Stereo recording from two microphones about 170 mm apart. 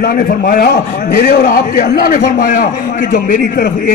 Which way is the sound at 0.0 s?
55° left (ahead or behind).